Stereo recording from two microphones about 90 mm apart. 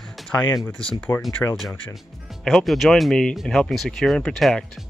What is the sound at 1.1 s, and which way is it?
Speech, 40° left (ahead or behind).